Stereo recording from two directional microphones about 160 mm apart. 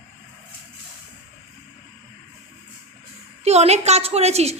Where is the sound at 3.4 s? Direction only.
40° right (ahead or behind).